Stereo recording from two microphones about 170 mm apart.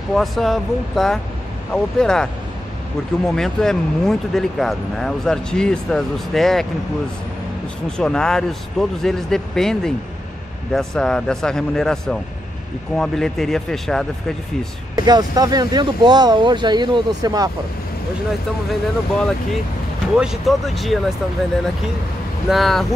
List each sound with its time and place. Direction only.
0.1 s speech: centre (ahead or behind)
8.0 s speech: 5° left (ahead or behind)
15.0 s speech: 25° right (ahead or behind)
18.7 s speech: 5° left (ahead or behind)
22.5 s speech: centre (ahead or behind)